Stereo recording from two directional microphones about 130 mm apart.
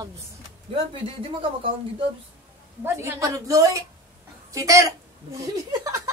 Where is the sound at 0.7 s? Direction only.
45° right (ahead or behind).